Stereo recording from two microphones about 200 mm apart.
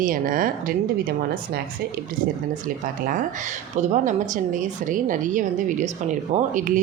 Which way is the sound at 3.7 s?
35° right (ahead or behind).